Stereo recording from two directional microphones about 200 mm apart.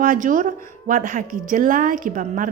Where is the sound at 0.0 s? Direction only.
40° right (ahead or behind).